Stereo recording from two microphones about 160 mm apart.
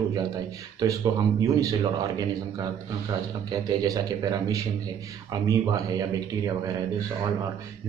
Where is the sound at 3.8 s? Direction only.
20° right (ahead or behind).